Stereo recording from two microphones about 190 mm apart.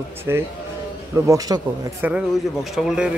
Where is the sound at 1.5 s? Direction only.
20° right (ahead or behind); by 3.1 s 5° right (ahead or behind).